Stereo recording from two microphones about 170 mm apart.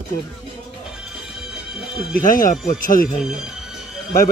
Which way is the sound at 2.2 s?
55° left (ahead or behind).